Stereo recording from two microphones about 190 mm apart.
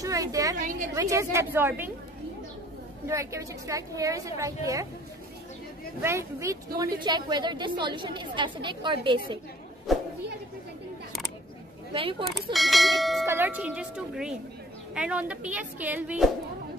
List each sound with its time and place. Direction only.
0.0 s a woman's voice: 15° right (ahead or behind)
0.6 s a woman's voice: 45° right (ahead or behind)
0.9 s a woman's voice: 15° right (ahead or behind)
3.1 s a woman's voice: 15° right (ahead or behind)
6.0 s a woman's voice: 15° right (ahead or behind)
9.9 s a sound: centre (ahead or behind)
11.9 s a woman's voice: 30° right (ahead or behind)
12.5 s speech: centre (ahead or behind)
13.2 s a woman's voice: 10° right (ahead or behind)